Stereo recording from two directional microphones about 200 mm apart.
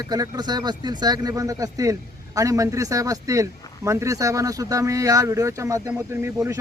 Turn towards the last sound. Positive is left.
turn(degrees=-15)  # may be behind; listen again after turning